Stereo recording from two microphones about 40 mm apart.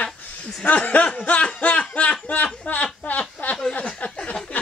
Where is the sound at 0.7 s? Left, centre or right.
Left.